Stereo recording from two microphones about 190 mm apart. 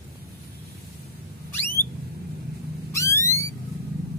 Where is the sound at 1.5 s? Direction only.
10° left (ahead or behind).